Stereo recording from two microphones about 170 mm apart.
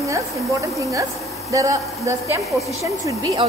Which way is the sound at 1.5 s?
20° right (ahead or behind).